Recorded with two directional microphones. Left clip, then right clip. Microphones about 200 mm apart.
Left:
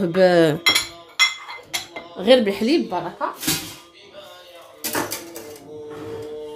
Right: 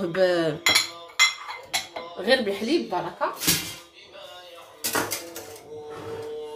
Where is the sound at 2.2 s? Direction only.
40° left (ahead or behind).